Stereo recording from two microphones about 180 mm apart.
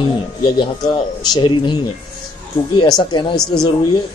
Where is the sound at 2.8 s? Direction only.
25° left (ahead or behind).